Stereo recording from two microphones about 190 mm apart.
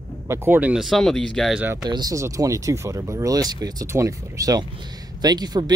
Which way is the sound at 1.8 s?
20° right (ahead or behind).